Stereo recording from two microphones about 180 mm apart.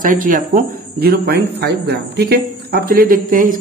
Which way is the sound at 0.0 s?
50° right (ahead or behind).